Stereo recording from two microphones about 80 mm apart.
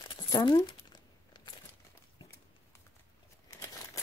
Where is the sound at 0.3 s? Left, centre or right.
Left.